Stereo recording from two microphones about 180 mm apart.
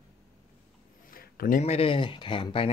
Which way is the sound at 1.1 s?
55° left (ahead or behind).